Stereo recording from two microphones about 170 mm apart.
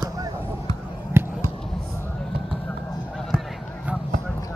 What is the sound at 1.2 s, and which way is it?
Basketball bounce, 15° right (ahead or behind).